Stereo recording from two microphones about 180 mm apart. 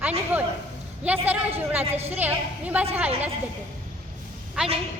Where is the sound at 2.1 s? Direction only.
10° right (ahead or behind).